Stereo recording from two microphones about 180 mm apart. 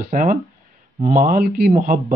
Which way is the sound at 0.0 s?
50° right (ahead or behind).